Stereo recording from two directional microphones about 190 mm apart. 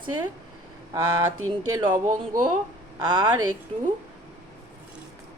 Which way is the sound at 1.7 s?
15° right (ahead or behind).